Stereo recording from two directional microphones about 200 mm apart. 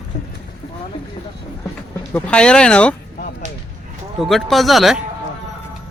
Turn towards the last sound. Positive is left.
turn(degrees=0)  # may be behind; listen again after turning